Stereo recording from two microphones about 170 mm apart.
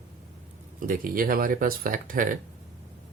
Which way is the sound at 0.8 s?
55° right (ahead or behind).